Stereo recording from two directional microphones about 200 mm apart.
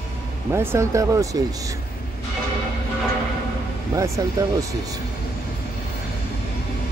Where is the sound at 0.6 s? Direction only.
15° right (ahead or behind).